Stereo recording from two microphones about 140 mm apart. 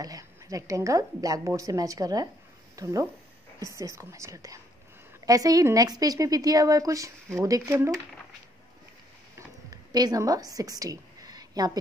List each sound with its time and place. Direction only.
0.0 s a woman's voice: 25° right (ahead or behind)
9.7 s a woman's voice: 25° right (ahead or behind)